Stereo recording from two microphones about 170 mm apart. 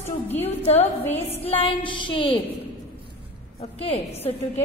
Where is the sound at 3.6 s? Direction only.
35° left (ahead or behind).